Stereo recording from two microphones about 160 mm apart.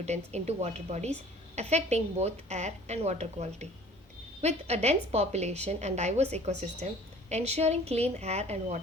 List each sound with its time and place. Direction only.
0.0 s a woman's voice: 45° right (ahead or behind)